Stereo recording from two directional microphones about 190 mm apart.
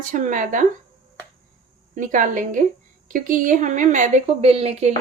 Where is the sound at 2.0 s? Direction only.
40° right (ahead or behind).